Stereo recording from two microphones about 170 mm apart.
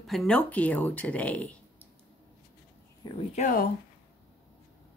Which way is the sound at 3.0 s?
25° left (ahead or behind).